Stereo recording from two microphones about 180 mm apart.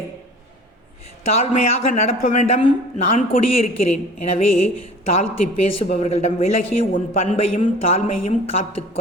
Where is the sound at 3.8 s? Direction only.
35° left (ahead or behind).